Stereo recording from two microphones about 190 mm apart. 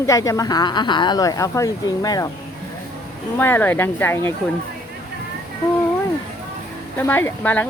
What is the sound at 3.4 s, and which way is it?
Speech, 10° left (ahead or behind).